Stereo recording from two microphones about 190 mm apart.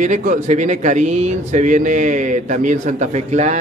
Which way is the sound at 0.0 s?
40° right (ahead or behind).